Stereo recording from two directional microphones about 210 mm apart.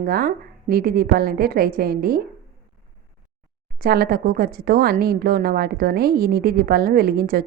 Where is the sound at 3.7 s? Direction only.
45° right (ahead or behind).